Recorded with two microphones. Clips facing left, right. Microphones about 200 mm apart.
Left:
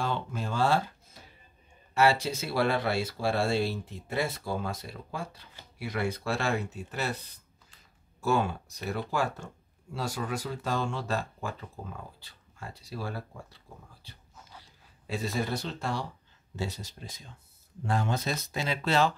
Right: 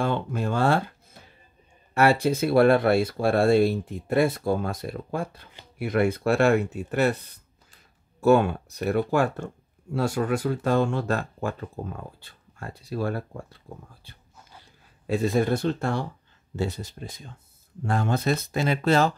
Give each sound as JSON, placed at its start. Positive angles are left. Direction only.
{"t": 0.0, "sound": "speech", "side_deg": -60}
{"t": 2.0, "sound": "speech", "side_deg": -55}